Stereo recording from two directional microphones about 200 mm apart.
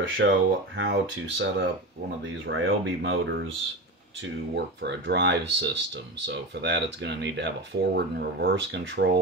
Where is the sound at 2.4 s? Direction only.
70° right (ahead or behind).